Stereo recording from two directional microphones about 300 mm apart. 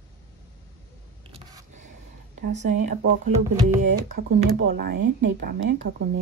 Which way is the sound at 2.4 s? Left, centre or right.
Right.